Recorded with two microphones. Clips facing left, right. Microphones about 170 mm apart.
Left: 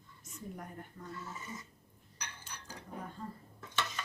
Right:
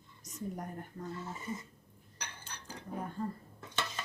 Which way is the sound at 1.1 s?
30° right (ahead or behind).